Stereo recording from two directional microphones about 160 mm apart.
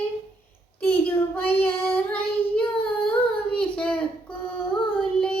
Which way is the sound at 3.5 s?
5° left (ahead or behind).